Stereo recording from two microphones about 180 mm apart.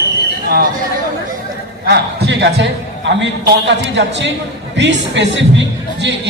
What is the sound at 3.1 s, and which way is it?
A man's voice, 80° right.